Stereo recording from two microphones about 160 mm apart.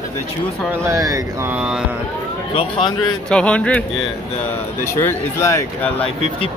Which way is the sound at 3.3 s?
5° left (ahead or behind).